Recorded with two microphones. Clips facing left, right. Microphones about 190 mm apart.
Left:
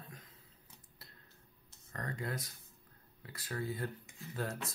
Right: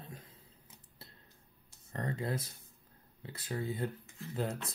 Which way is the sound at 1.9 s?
25° right (ahead or behind).